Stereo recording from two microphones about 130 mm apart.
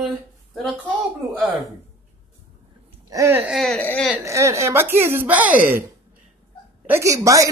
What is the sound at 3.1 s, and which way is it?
Speech, 20° right (ahead or behind).